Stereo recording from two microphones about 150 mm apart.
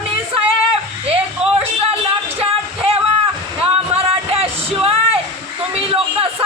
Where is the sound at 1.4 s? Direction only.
45° right (ahead or behind).